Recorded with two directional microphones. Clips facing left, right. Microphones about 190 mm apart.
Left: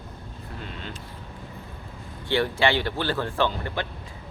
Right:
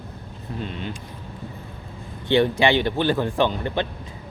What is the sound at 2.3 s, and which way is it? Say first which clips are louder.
Speech: right 5 dB; 20° right (ahead or behind).